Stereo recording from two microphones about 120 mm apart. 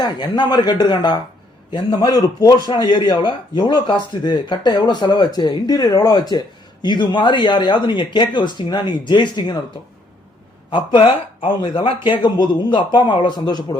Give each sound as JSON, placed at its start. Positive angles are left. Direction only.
{"t": 0.0, "sound": "a man's voice", "side_deg": 35}
{"t": 10.7, "sound": "a man's voice", "side_deg": 45}